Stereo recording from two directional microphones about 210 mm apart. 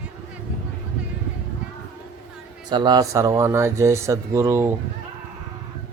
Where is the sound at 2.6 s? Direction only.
20° right (ahead or behind).